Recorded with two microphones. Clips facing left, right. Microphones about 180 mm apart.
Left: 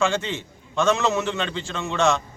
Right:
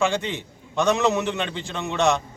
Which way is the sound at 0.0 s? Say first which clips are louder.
Even; 15° right (ahead or behind).